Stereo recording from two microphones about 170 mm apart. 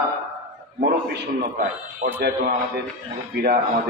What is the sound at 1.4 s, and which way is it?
Speech, 60° right (ahead or behind).